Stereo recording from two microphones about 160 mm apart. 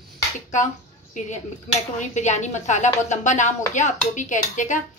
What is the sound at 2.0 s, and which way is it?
Speech, 45° left (ahead or behind).